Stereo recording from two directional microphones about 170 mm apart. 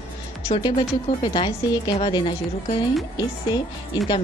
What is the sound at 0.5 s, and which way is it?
A woman's voice, 30° left (ahead or behind).